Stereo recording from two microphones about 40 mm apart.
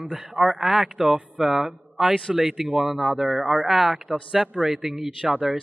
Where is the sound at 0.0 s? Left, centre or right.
Centre.